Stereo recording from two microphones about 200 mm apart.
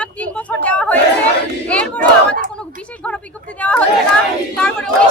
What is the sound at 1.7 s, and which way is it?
Battle cry, 5° left (ahead or behind).